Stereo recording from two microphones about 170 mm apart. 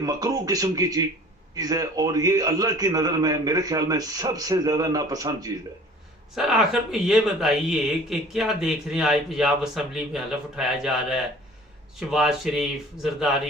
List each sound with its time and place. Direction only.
0.0 s a man's voice: 20° right (ahead or behind)
6.3 s speech: 5° right (ahead or behind)